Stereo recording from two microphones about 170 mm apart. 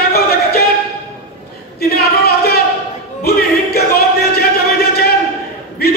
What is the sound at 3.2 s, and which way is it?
Music, 65° left (ahead or behind).